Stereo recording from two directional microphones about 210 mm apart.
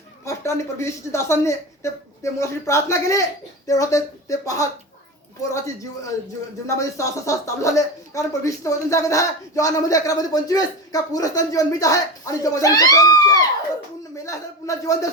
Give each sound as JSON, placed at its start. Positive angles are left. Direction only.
{"t": 0.3, "sound": "speech", "side_deg": 15}
{"t": 6.7, "sound": "speech", "side_deg": 15}